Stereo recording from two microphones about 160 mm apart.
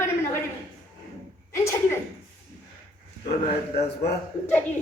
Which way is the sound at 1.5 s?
20° left (ahead or behind).